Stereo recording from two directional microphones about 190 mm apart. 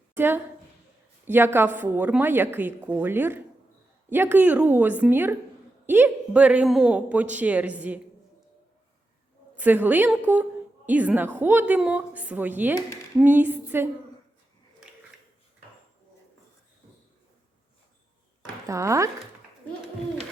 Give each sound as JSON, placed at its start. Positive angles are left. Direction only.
{"t": 0.2, "sound": "a woman's voice", "side_deg": -10}
{"t": 9.6, "sound": "a woman's voice", "side_deg": -10}
{"t": 18.6, "sound": "a woman's voice", "side_deg": -15}